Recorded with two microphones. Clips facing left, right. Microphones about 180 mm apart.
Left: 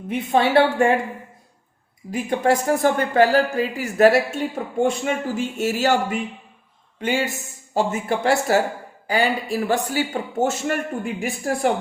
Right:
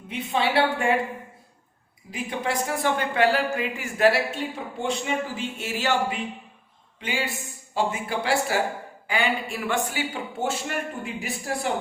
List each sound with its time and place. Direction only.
0.1 s speech: 50° left (ahead or behind)
2.0 s a man's voice: 45° left (ahead or behind)